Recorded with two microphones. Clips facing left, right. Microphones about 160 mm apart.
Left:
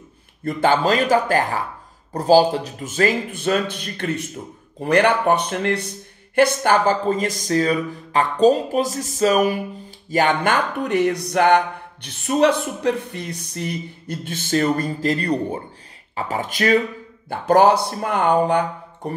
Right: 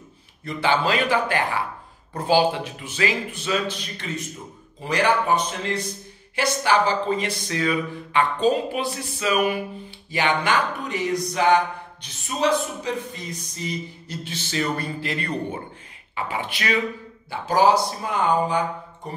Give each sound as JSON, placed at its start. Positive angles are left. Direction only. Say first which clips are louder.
{"t": 0.4, "sound": "speech", "louder": "left 4 dB", "side_deg": 45}
{"t": 17.3, "sound": "speech", "louder": "left 4 dB", "side_deg": 55}